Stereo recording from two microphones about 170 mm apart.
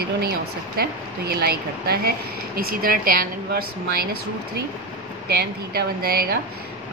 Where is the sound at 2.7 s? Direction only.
55° right (ahead or behind).